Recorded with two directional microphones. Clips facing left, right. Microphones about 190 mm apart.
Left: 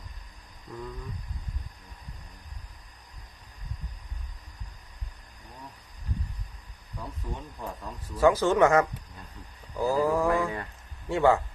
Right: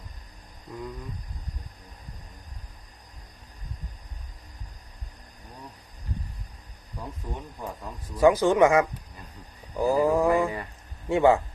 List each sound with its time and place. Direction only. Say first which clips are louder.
7.2 s speech: right 1 dB; 15° right (ahead or behind)
11.1 s speech: right 3 dB; 15° right (ahead or behind)